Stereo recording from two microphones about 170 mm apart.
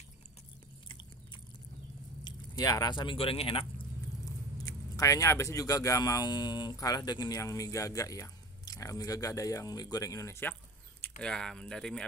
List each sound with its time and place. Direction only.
2.2 s speech: 25° left (ahead or behind)
4.2 s speech: 20° left (ahead or behind)
11.0 s speech: 5° left (ahead or behind)